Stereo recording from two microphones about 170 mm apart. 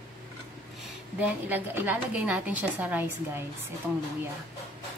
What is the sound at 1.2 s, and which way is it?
A woman's voice, 10° right (ahead or behind).